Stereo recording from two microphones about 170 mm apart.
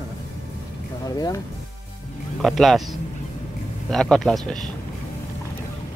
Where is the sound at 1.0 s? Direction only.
25° left (ahead or behind).